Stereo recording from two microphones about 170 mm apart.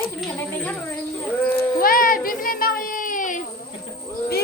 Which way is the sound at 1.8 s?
55° left (ahead or behind).